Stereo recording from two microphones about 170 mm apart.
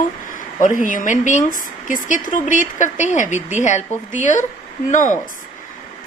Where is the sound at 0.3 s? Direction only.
50° left (ahead or behind).